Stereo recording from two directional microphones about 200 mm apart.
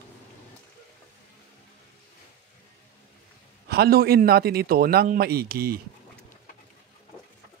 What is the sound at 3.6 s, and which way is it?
A man's voice, 50° right (ahead or behind).